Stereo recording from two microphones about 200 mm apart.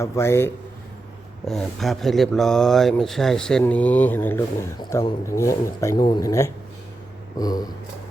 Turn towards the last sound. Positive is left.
turn(degrees=20)  # may be behind; listen again after turning